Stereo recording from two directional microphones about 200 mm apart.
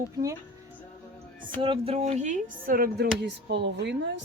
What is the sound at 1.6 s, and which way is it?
Speech, 25° right (ahead or behind).